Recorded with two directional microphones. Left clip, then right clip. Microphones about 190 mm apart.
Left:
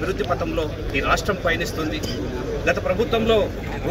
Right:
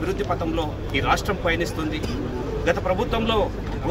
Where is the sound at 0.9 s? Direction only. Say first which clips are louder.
Left 1 dB; 30° right (ahead or behind).